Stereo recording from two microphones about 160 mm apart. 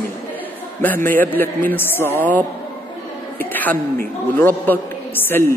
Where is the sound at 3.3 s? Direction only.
10° left (ahead or behind).